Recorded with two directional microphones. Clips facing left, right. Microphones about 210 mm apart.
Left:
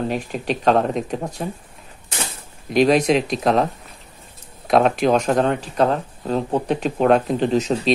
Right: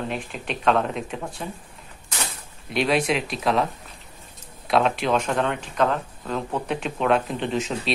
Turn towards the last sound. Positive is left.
turn(degrees=35)  # may be behind; listen again after turning